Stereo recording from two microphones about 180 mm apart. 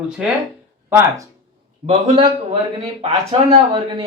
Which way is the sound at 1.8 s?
30° right (ahead or behind).